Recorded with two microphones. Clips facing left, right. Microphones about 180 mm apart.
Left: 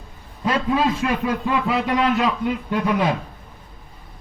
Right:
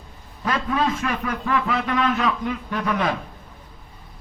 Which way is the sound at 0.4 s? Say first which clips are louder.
Left 3 dB; 15° left (ahead or behind).